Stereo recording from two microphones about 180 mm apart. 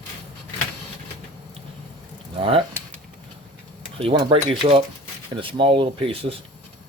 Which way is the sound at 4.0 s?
30° right (ahead or behind).